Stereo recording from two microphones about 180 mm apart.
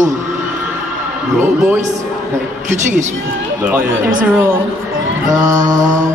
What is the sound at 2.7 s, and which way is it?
Speech, 45° right (ahead or behind).